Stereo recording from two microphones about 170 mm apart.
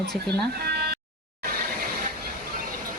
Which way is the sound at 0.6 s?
70° right (ahead or behind).